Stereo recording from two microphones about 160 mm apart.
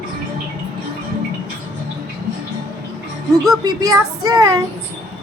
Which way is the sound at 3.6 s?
25° right (ahead or behind).